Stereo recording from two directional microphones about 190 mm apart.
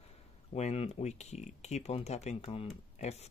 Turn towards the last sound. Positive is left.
turn(degrees=35)  # may be behind; listen again after turning